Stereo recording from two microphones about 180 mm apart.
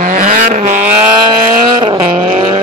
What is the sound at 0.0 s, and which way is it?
Vehicle, 45° right (ahead or behind).